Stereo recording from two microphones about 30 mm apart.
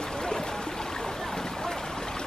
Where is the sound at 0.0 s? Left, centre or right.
Left.